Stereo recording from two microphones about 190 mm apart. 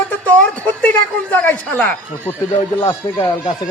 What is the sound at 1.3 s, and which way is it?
Speech, 10° left (ahead or behind).